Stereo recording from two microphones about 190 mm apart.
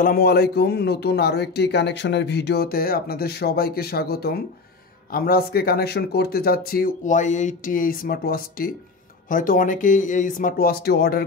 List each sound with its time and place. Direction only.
0.0 s speech: 55° left (ahead or behind)